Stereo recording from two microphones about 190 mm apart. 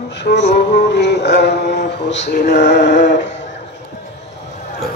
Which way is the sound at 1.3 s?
65° left (ahead or behind).